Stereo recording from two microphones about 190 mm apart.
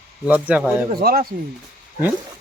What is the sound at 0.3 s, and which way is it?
Speech, 10° right (ahead or behind).